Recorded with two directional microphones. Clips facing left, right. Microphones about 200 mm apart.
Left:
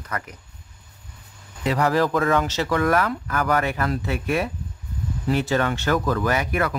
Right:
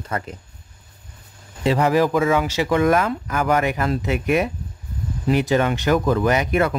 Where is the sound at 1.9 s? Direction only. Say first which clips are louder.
Right 2 dB; 10° right (ahead or behind).